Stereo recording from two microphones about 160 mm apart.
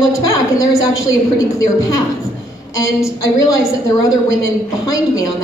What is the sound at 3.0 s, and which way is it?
A woman's voice, 20° left (ahead or behind).